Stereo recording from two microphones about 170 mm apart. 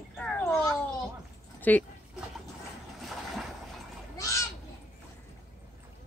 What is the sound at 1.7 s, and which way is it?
Speech, 10° left (ahead or behind).